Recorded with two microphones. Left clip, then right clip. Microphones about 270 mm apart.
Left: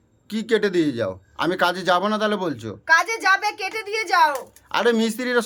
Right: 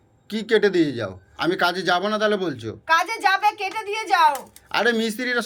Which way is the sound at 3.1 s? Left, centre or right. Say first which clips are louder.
Even; centre.